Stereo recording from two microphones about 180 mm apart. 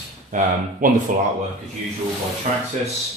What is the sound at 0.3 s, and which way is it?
Speech, 45° right (ahead or behind).